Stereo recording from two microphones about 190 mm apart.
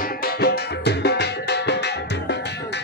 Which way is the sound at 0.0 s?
50° left (ahead or behind).